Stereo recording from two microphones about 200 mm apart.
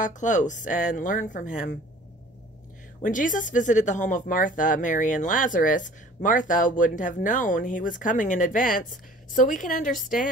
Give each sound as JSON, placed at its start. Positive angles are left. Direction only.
{"t": 0.0, "sound": "speech", "side_deg": 40}
{"t": 3.0, "sound": "speech", "side_deg": 40}